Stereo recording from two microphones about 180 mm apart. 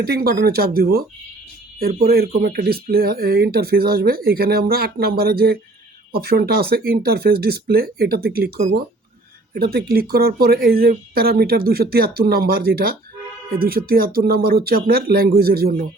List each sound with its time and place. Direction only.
0.0 s speech: 60° right (ahead or behind)
9.6 s speech: 60° right (ahead or behind)